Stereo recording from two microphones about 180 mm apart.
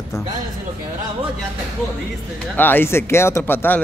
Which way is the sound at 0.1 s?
15° left (ahead or behind).